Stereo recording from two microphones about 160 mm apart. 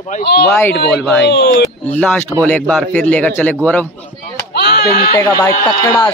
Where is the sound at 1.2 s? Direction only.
90° left.